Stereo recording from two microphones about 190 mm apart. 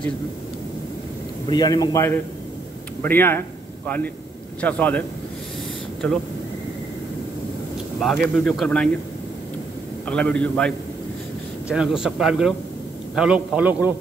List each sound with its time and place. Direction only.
1.5 s a man's voice: 20° left (ahead or behind)
8.0 s speech: 5° left (ahead or behind)
10.0 s speech: 5° left (ahead or behind)
11.7 s a man's voice: 5° right (ahead or behind)